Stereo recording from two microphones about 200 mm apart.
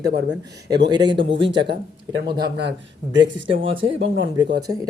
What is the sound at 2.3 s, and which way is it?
Speech, 55° right (ahead or behind).